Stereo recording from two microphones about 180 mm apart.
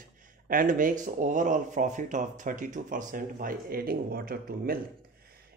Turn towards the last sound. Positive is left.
turn(degrees=-55)  # may be behind; listen again after turning